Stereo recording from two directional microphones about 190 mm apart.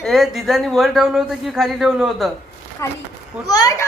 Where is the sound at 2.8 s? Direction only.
15° left (ahead or behind).